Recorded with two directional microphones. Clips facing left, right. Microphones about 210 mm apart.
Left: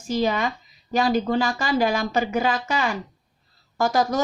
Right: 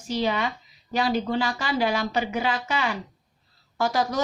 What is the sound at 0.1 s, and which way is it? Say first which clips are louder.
Speech: left 3 dB; 45° left (ahead or behind).